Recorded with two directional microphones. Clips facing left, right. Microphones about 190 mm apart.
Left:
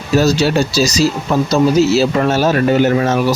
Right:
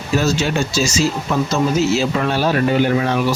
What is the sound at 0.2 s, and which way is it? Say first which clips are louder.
Speech: left 6 dB; 35° left (ahead or behind).